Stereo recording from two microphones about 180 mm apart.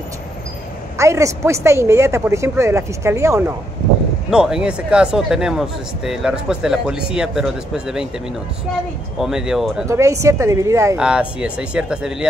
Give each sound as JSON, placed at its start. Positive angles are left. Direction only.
{"t": 0.9, "sound": "a woman's voice", "side_deg": -15}
{"t": 4.3, "sound": "speech", "side_deg": -5}
{"t": 9.2, "sound": "speech", "side_deg": -5}
{"t": 9.8, "sound": "a woman's voice", "side_deg": -15}
{"t": 11.0, "sound": "speech", "side_deg": -5}